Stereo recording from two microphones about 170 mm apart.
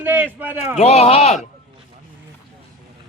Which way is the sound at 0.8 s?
40° left (ahead or behind).